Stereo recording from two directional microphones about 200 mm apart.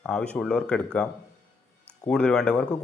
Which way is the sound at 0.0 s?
5° left (ahead or behind).